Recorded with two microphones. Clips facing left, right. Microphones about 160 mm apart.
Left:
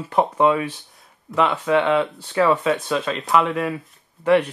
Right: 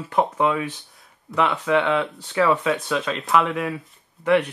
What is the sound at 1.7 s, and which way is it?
Speech, 20° left (ahead or behind).